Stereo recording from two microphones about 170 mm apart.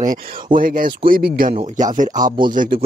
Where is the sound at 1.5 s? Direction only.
45° right (ahead or behind).